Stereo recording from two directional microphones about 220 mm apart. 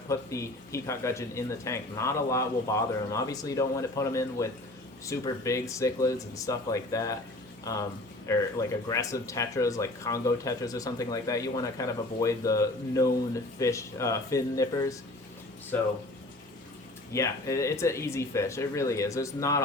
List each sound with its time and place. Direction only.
0.1 s speech: 15° left (ahead or behind)
17.1 s speech: 15° left (ahead or behind)